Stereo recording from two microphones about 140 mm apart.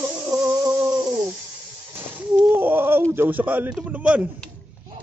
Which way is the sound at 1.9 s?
15° right (ahead or behind).